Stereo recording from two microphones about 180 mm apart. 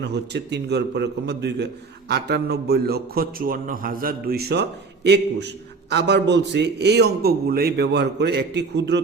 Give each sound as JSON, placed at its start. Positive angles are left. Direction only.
{"t": 0.0, "sound": "a man's voice", "side_deg": -70}